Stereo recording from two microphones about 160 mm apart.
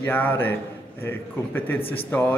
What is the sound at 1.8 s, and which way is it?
Speech, 35° left (ahead or behind).